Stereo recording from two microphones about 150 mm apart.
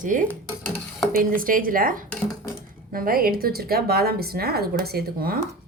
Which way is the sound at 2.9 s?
75° right (ahead or behind).